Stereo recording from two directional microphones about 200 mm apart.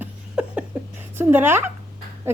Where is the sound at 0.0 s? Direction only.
5° right (ahead or behind).